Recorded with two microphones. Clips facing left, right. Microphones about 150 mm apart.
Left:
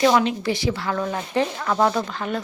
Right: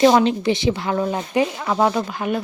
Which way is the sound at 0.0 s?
30° right (ahead or behind).